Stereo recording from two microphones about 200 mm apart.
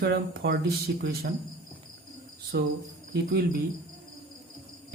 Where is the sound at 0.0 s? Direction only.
55° right (ahead or behind).